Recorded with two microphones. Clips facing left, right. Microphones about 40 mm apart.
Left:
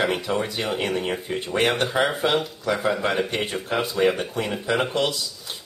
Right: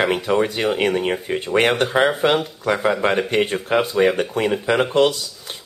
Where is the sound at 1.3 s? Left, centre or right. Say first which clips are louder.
Right 4 dB; right.